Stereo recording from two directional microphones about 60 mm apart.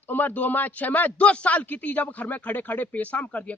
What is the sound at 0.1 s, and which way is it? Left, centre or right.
A man's voice, left.